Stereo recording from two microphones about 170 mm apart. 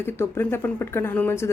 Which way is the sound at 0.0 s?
15° left (ahead or behind).